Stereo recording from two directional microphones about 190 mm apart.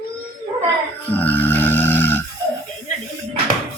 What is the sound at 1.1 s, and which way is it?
Grunt, 10° left (ahead or behind).